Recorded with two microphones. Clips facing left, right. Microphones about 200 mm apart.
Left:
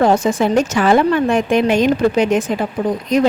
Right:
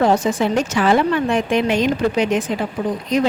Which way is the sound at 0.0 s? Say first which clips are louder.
Left 2 dB; 45° left (ahead or behind).